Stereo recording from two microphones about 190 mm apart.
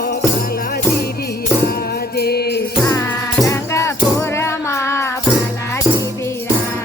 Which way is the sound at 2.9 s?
15° left (ahead or behind).